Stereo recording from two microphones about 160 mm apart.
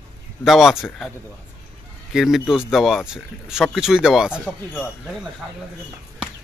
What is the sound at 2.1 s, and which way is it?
Speech, centre (ahead or behind).